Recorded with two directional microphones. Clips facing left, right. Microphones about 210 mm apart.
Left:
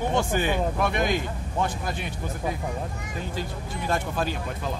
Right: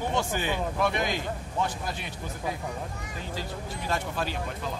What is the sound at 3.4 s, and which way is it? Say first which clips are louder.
Speech: left 3 dB; 50° left (ahead or behind).